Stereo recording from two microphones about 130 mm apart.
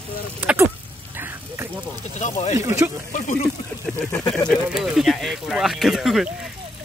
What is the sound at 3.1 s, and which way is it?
Speech, 80° left.